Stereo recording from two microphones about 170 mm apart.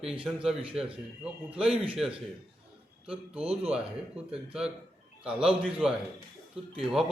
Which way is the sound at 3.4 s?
35° right (ahead or behind).